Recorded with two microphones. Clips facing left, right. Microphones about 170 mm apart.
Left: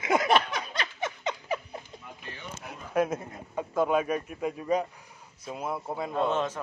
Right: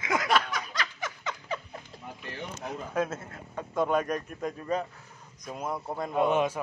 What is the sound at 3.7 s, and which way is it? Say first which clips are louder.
A man's voice: left 1 dB; 5° left (ahead or behind).